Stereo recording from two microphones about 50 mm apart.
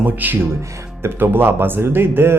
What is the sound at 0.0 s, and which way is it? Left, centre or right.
Speech, right.